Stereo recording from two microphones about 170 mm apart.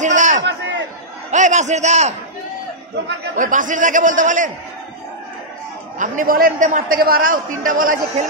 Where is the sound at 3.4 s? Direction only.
50° right (ahead or behind).